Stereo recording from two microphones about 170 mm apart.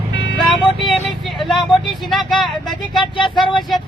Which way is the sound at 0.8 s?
Centre (ahead or behind).